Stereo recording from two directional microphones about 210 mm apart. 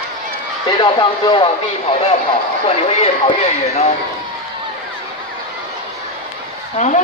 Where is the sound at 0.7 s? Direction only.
20° left (ahead or behind).